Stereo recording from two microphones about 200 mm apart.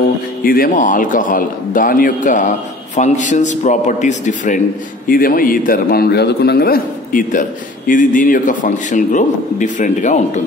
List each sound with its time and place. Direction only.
0.4 s a man's voice: 45° left (ahead or behind)